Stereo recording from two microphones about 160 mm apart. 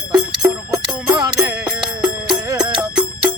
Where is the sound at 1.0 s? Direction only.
5° right (ahead or behind).